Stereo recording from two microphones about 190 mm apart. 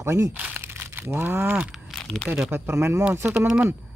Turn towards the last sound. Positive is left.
turn(degrees=-5)  # may be behind; listen again after turning